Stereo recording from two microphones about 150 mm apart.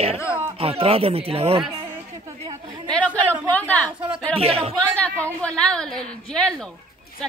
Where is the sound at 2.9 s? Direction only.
10° left (ahead or behind).